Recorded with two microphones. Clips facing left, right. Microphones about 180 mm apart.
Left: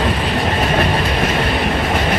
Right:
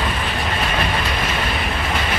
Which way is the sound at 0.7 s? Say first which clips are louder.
Left 5 dB; 40° left (ahead or behind).